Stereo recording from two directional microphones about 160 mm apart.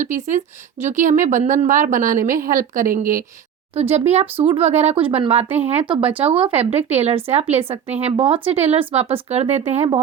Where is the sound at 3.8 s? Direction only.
40° right (ahead or behind).